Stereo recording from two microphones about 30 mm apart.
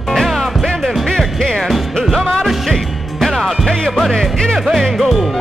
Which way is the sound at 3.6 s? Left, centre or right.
Left.